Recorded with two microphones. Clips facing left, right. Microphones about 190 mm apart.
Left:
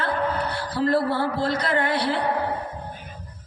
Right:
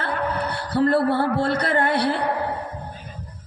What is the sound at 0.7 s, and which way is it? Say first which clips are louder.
A woman's voice: right 4 dB; 60° right (ahead or behind).